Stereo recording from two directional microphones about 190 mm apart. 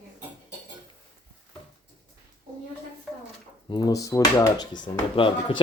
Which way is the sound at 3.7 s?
20° left (ahead or behind).